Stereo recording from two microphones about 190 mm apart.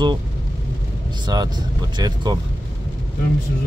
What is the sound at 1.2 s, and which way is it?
Speech, 20° right (ahead or behind).